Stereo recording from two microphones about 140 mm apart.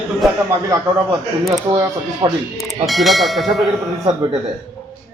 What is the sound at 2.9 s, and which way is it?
Speech, centre (ahead or behind).